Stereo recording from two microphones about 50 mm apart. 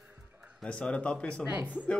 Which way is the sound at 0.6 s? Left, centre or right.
Left.